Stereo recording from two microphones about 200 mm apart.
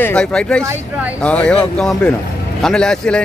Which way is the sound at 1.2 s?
5° left (ahead or behind).